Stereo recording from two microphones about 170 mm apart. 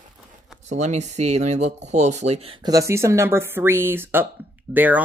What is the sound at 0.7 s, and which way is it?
Speech, 45° right (ahead or behind).